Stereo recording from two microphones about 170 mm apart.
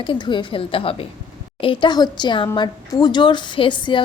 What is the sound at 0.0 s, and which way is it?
A woman's voice, 30° left (ahead or behind).